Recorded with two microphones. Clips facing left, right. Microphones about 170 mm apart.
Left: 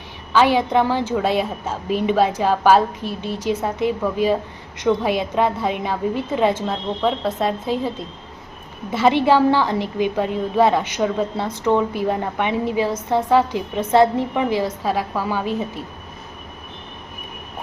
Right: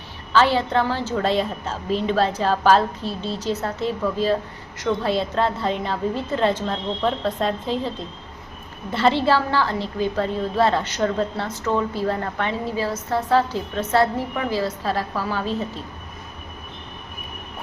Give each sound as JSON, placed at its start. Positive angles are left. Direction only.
{"t": 0.3, "sound": "a woman's voice", "side_deg": 15}